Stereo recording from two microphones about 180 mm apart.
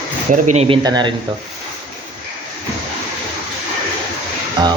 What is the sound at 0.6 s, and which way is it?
Speech, 25° right (ahead or behind).